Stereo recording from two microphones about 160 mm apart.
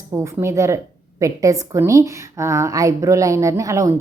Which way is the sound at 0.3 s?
20° right (ahead or behind).